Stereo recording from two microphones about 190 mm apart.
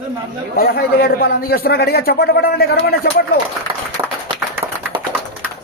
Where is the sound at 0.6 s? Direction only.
50° left (ahead or behind).